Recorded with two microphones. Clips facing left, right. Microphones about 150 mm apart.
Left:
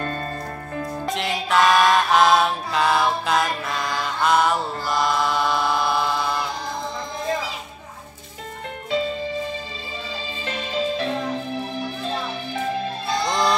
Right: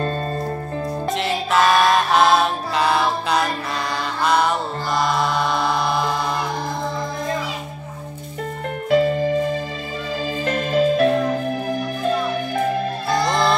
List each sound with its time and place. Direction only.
1.0 s music: centre (ahead or behind)
8.9 s music: 55° right (ahead or behind)